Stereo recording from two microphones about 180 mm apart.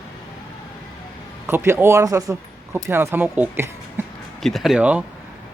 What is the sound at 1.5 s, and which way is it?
Speech, 15° right (ahead or behind).